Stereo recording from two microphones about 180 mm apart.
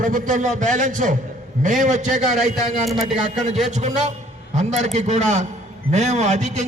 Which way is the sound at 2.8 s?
Centre (ahead or behind).